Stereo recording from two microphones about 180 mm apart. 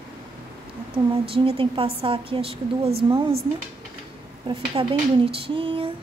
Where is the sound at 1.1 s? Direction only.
30° right (ahead or behind).